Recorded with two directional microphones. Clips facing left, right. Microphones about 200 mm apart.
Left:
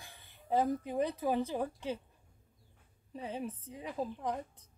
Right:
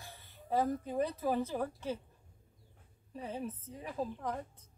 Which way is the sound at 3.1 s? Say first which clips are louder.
Left 1 dB; 15° left (ahead or behind).